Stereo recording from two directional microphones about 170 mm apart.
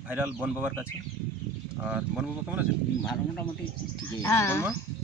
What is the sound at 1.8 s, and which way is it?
Speech, 5° right (ahead or behind).